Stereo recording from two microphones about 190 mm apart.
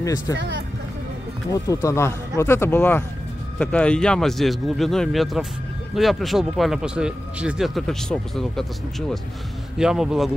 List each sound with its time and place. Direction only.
0.0 s speech: 15° left (ahead or behind)
0.4 s speech: 65° right (ahead or behind)
1.5 s speech: 15° left (ahead or behind)
9.8 s speech: 5° right (ahead or behind)